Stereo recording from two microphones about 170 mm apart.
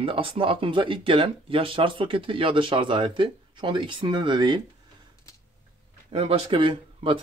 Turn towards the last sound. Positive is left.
turn(degrees=-30)  # may be behind; listen again after turning